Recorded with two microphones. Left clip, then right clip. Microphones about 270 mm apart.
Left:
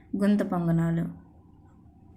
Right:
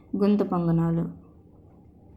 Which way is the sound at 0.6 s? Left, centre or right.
Left.